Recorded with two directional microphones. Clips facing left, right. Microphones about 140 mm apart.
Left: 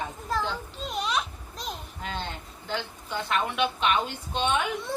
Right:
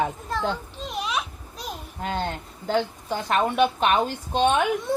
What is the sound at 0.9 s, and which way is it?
Children playing, centre (ahead or behind).